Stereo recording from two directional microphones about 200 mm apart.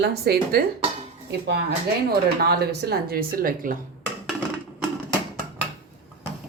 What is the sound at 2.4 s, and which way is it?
Speech, 50° right (ahead or behind).